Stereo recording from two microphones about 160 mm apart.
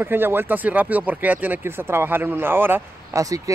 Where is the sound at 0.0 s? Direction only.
15° right (ahead or behind).